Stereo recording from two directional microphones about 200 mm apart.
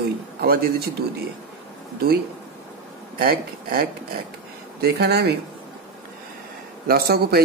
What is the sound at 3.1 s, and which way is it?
Speech, 50° right (ahead or behind).